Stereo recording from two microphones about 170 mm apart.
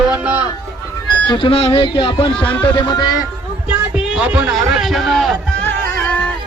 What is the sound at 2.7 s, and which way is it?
Music, 25° left (ahead or behind).